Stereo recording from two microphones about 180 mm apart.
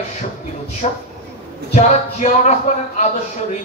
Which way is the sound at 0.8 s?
35° left (ahead or behind).